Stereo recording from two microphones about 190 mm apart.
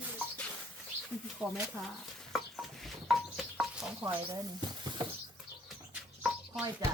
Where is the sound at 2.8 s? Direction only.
5° right (ahead or behind); by 4.9 s 20° right (ahead or behind).